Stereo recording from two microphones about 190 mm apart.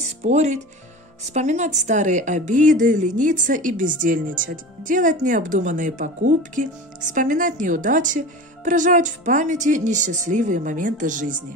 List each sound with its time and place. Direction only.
0.2 s a woman's voice: 35° right (ahead or behind)